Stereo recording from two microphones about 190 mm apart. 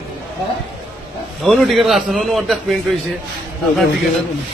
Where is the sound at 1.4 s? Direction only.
Centre (ahead or behind).